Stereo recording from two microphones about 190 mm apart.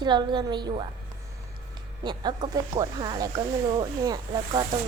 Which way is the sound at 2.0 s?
25° right (ahead or behind).